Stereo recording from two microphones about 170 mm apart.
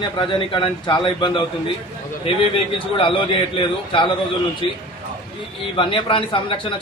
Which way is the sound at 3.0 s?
30° left (ahead or behind).